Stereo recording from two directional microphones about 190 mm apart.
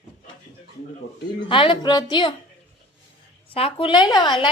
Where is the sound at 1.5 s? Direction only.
25° left (ahead or behind).